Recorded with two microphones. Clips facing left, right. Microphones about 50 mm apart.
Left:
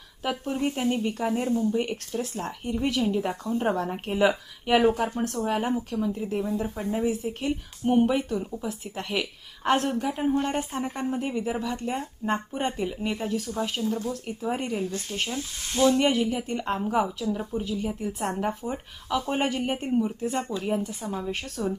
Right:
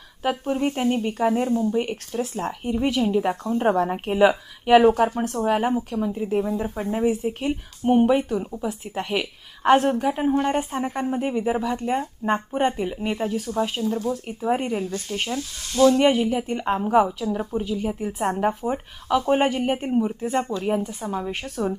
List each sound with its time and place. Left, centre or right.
0.2 s a woman's voice: centre
3.0 s a woman's voice: right
14.7 s speech: right
15.4 s speech: left
15.9 s a woman's voice: right
21.2 s a woman's voice: right